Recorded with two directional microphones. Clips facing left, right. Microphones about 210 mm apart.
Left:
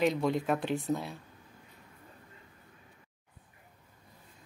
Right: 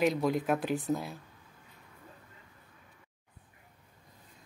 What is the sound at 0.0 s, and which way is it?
Speech, centre (ahead or behind).